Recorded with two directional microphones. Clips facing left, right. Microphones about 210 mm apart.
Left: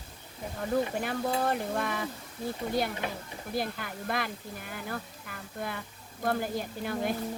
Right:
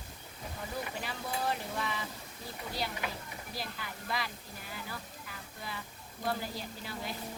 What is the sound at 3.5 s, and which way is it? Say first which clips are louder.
Speech: left 10 dB; 55° left (ahead or behind).